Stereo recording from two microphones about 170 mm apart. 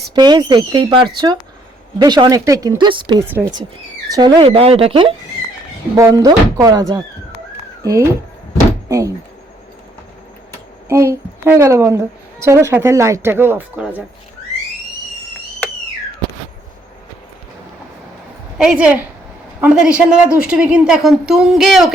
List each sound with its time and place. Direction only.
0.1 s speech: 25° right (ahead or behind)
3.2 s a woman's voice: 10° right (ahead or behind)
4.1 s speech: 25° right (ahead or behind)
6.0 s speech: 20° right (ahead or behind)
10.8 s a woman's voice: 15° right (ahead or behind)
18.5 s a woman's voice: 5° right (ahead or behind)